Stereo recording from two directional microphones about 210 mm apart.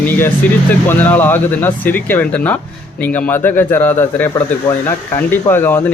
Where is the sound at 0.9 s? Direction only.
10° left (ahead or behind).